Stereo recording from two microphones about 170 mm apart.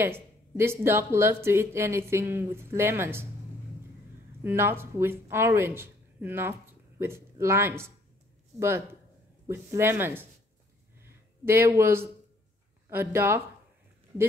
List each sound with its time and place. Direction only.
0.0 s speech: 15° right (ahead or behind)
4.4 s speech: 15° right (ahead or behind)
11.0 s a sound: 15° right (ahead or behind)
12.9 s speech: 15° right (ahead or behind)